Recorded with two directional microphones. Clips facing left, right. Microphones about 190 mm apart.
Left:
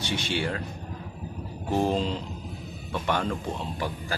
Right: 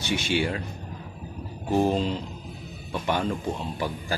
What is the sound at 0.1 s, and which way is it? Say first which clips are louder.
Speech: right 4 dB; 10° right (ahead or behind).